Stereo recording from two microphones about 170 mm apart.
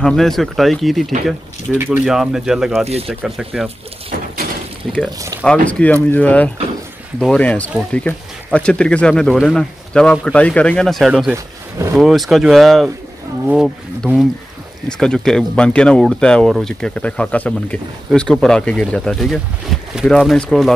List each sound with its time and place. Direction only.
0.0 s speech: centre (ahead or behind)
1.8 s speech: 10° right (ahead or behind)
5.4 s speech: 5° left (ahead or behind)
11.3 s speech: 15° right (ahead or behind)
12.0 s speech: centre (ahead or behind)